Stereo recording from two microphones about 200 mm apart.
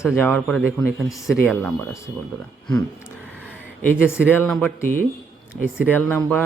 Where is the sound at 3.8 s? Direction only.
10° left (ahead or behind).